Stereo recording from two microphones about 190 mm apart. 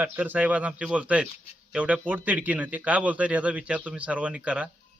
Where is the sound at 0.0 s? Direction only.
10° right (ahead or behind).